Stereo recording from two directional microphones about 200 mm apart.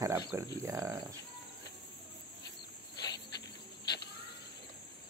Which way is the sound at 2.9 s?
20° left (ahead or behind).